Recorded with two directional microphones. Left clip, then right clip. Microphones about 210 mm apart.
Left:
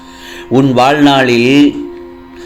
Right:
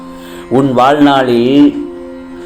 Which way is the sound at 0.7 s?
30° left (ahead or behind).